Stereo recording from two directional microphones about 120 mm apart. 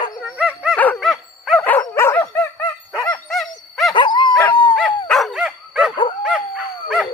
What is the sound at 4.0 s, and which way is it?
Dog, 40° left (ahead or behind).